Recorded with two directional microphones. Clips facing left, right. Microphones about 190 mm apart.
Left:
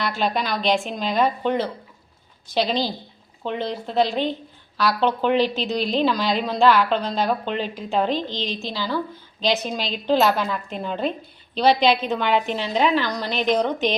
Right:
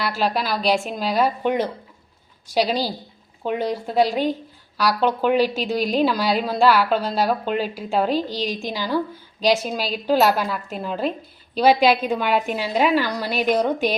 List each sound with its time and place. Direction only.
0.0 s a woman's voice: 5° right (ahead or behind)